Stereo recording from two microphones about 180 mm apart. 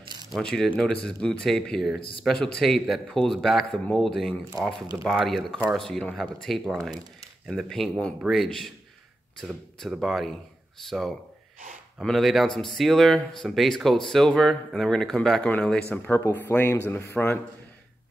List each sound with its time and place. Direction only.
0.3 s speech: 5° left (ahead or behind)
2.0 s speech: 30° left (ahead or behind)
2.2 s speech: 5° left (ahead or behind)